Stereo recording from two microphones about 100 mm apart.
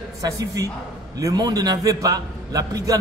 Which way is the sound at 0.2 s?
35° right (ahead or behind).